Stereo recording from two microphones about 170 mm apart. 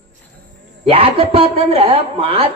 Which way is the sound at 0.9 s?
35° right (ahead or behind).